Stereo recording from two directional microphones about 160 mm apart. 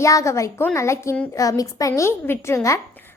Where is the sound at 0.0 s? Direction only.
20° left (ahead or behind).